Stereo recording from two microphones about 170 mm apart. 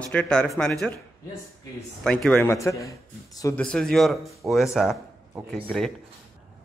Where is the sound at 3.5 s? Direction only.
5° left (ahead or behind).